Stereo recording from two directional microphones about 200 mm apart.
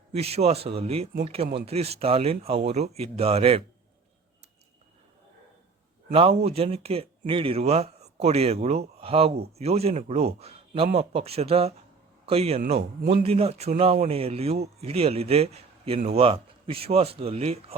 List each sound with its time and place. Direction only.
0.1 s speech: 30° right (ahead or behind)
6.1 s a man's voice: 30° right (ahead or behind)